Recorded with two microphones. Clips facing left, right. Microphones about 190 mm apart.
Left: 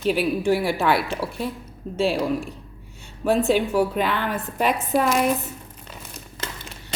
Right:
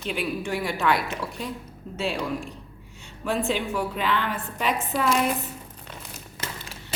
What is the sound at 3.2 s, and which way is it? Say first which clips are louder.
A woman's voice: left 6 dB; 40° left (ahead or behind).